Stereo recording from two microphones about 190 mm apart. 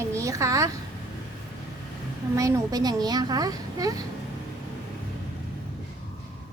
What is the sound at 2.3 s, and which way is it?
A woman's voice, 15° right (ahead or behind).